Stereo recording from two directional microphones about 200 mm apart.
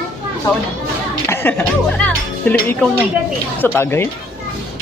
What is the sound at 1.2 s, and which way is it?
Music, 10° left (ahead or behind).